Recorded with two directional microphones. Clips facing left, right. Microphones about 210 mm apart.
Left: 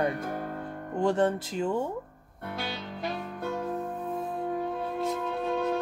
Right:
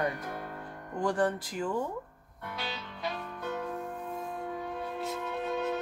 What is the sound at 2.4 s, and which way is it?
Music, 45° left (ahead or behind).